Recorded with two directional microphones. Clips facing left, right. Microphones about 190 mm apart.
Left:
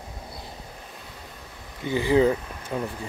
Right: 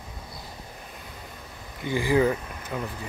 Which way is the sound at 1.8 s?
25° left (ahead or behind).